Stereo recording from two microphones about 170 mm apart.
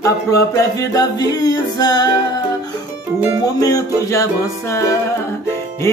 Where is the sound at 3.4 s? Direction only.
20° left (ahead or behind).